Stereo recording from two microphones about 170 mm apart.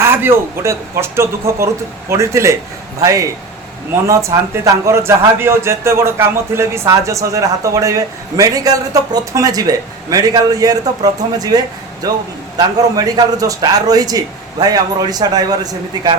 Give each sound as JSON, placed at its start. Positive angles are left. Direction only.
{"t": 0.0, "sound": "a man's voice", "side_deg": -15}